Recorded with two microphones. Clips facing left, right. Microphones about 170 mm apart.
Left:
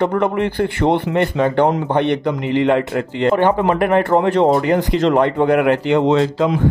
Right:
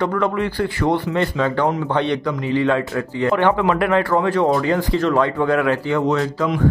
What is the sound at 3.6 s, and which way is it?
Speech, 45° left (ahead or behind).